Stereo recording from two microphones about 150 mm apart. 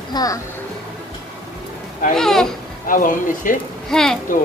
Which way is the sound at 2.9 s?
65° left (ahead or behind).